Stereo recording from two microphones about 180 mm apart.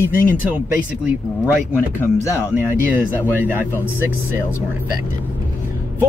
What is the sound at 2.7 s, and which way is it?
Speech, 10° right (ahead or behind).